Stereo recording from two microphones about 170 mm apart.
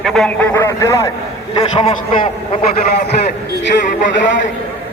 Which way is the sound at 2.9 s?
75° left (ahead or behind).